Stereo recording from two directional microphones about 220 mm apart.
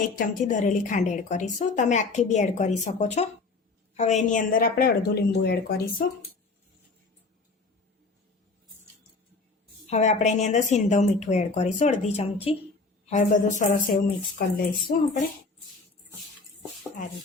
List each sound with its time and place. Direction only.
0.2 s a woman's voice: 35° left (ahead or behind)
9.9 s a woman's voice: 30° left (ahead or behind)